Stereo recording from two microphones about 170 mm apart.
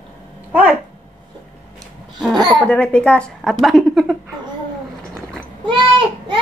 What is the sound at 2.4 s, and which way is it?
Speech, centre (ahead or behind).